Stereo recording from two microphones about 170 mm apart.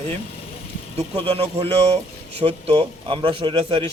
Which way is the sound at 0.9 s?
35° right (ahead or behind).